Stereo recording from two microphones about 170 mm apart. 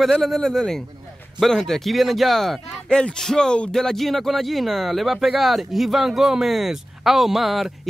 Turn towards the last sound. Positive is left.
turn(degrees=0)  # may be behind; listen again after turning